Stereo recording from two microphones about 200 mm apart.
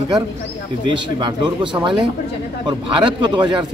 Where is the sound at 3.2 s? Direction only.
25° right (ahead or behind).